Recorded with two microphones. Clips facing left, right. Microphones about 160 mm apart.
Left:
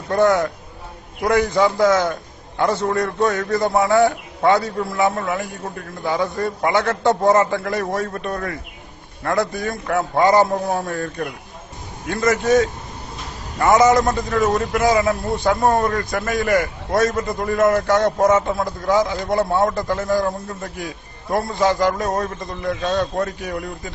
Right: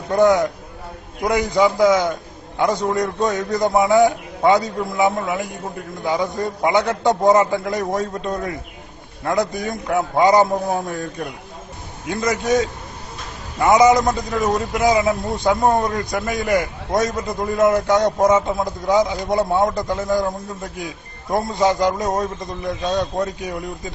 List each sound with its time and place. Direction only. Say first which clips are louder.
0.1 s a man's voice: right 1 dB; 15° right (ahead or behind)